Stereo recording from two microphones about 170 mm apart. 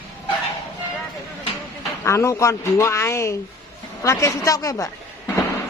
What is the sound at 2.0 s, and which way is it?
Speech, 15° left (ahead or behind).